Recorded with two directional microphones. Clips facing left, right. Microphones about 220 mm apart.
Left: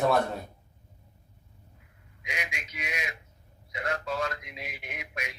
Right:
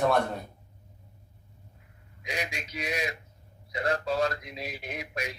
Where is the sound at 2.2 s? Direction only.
35° right (ahead or behind).